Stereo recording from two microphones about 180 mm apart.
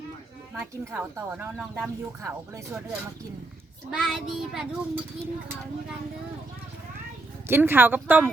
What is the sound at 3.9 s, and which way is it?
Child singing, centre (ahead or behind).